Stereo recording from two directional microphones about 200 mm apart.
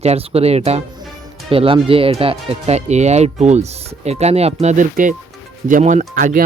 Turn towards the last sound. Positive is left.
turn(degrees=-45)  # may be behind; listen again after turning